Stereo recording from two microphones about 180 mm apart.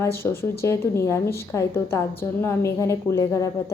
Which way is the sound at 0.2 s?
15° left (ahead or behind).